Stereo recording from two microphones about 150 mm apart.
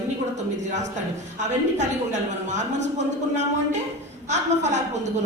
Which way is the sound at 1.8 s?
50° right (ahead or behind).